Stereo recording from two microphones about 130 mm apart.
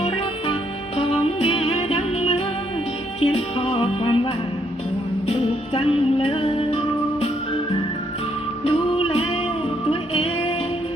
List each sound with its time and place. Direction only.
0.0 s music: 50° left (ahead or behind)
8.6 s music: 45° left (ahead or behind)